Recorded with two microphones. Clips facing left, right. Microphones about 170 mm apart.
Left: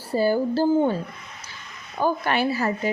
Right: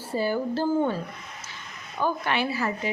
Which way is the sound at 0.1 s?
35° left (ahead or behind).